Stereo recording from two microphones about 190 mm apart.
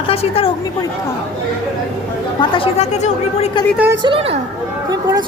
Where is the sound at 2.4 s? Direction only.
25° left (ahead or behind).